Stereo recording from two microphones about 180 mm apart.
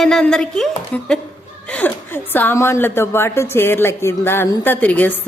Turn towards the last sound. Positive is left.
turn(degrees=10)  # may be behind; listen again after turning